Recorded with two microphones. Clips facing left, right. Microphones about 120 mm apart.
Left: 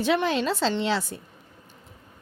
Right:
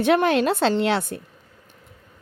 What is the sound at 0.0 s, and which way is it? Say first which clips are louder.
A woman's voice: right 5 dB; 60° right (ahead or behind).